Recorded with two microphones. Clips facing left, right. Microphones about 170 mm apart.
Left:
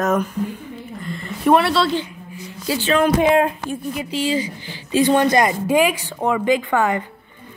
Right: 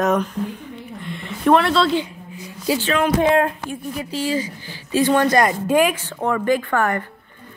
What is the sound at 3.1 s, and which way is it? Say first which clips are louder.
A woman's voice: left 1 dB; 15° left (ahead or behind).